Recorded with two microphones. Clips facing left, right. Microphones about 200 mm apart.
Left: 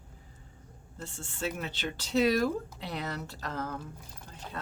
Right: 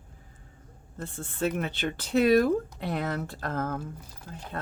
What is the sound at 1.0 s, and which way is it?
Speech, 55° right (ahead or behind).